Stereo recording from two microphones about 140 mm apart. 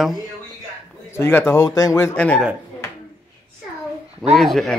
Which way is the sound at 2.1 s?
10° left (ahead or behind).